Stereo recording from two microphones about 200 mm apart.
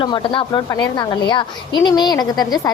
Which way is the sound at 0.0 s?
25° left (ahead or behind).